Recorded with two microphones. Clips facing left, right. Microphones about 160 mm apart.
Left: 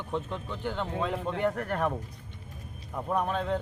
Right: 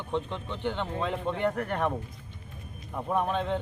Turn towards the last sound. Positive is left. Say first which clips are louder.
# right 1 dB
turn(degrees=0)  # may be behind; listen again after turning